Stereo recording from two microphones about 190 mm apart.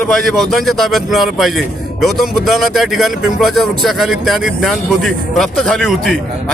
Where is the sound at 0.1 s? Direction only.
Centre (ahead or behind).